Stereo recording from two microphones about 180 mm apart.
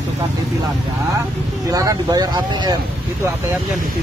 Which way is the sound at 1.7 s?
20° right (ahead or behind).